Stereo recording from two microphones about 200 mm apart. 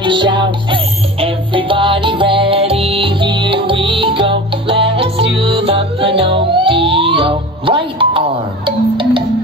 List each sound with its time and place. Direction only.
0.0 s music: 25° right (ahead or behind)